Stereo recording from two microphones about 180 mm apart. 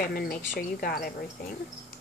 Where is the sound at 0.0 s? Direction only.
55° left (ahead or behind).